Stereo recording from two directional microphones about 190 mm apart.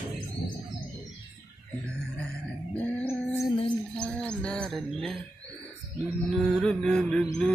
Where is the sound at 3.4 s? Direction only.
25° left (ahead or behind).